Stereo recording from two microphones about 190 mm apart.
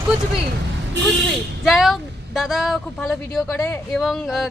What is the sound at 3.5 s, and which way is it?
Speech, 15° left (ahead or behind).